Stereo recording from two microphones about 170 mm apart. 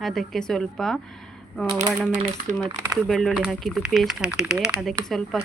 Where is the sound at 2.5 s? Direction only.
45° right (ahead or behind).